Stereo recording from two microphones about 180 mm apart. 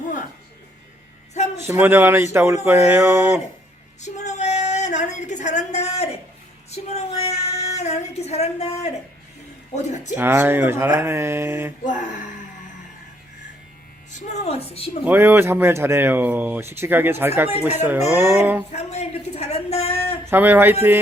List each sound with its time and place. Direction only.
1.6 s speech: 15° right (ahead or behind)
4.0 s a sound: 40° left (ahead or behind)
9.7 s a woman's voice: 40° left (ahead or behind)
10.2 s speech: 10° right (ahead or behind)
11.9 s speech: 45° left (ahead or behind)
14.1 s a woman's voice: 40° left (ahead or behind)
15.0 s speech: 10° right (ahead or behind)
18.7 s a sound: 35° left (ahead or behind)
20.3 s speech: 10° right (ahead or behind)